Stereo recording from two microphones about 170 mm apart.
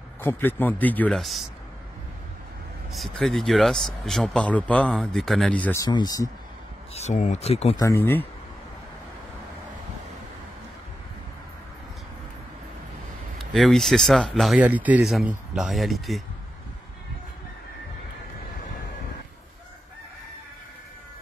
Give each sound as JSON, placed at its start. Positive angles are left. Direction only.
{"t": 0.2, "sound": "speech", "side_deg": 10}
{"t": 2.9, "sound": "speech", "side_deg": 0}
{"t": 5.9, "sound": "speech", "side_deg": 25}
{"t": 6.9, "sound": "speech", "side_deg": 40}
{"t": 7.8, "sound": "speech", "side_deg": 15}
{"t": 13.4, "sound": "speech", "side_deg": 0}